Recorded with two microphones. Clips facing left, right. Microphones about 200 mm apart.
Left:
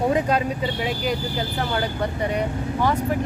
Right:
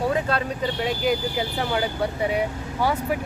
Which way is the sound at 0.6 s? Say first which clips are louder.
Right 1 dB; centre (ahead or behind).